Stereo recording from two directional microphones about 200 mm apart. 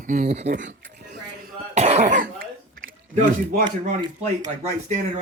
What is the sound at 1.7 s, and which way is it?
Cough, 35° right (ahead or behind).